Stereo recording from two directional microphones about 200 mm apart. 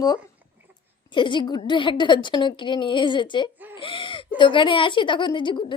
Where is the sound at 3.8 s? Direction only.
25° left (ahead or behind).